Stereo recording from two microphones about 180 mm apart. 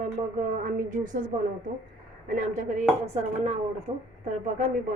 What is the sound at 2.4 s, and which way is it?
A woman's voice, 40° right (ahead or behind).